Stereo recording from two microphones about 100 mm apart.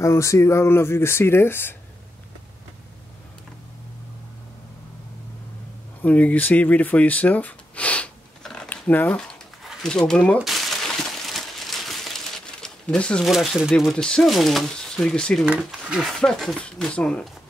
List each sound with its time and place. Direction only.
0.0 s speech: 30° left (ahead or behind)
6.0 s speech: 15° left (ahead or behind)
8.6 s a sound: 15° left (ahead or behind)
9.8 s speech: 10° left (ahead or behind)
10.4 s a sound: centre (ahead or behind)
13.3 s speech: centre (ahead or behind)
15.4 s speech: 10° right (ahead or behind)
16.1 s speech: 5° left (ahead or behind)